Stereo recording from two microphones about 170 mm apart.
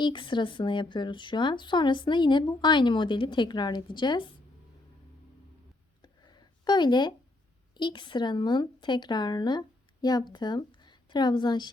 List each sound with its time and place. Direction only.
0.0 s speech: 30° left (ahead or behind)
6.0 s a sound: 25° left (ahead or behind)
7.7 s speech: 25° left (ahead or behind)